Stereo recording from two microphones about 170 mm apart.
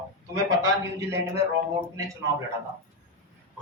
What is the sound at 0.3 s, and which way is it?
Speech, 20° right (ahead or behind).